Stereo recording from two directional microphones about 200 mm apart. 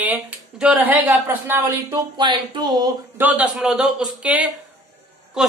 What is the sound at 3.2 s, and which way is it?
A man's voice, 5° right (ahead or behind).